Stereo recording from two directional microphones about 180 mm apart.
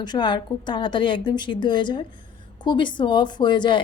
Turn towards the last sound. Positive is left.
turn(degrees=25)  # may be behind; listen again after turning